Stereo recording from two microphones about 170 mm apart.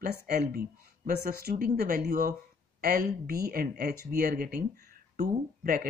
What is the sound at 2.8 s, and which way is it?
Speech, 60° right (ahead or behind).